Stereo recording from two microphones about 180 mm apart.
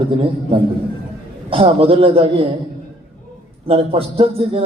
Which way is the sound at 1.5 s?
30° right (ahead or behind).